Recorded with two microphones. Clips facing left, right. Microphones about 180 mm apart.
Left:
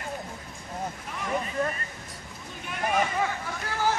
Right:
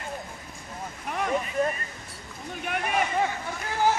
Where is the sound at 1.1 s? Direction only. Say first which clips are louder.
Right 7 dB; 60° right (ahead or behind).